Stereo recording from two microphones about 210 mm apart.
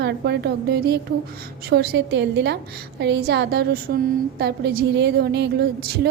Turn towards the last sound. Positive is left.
turn(degrees=-50)  # may be behind; listen again after turning